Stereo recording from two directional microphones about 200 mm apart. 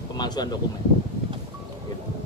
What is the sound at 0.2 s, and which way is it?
Speech, 20° left (ahead or behind).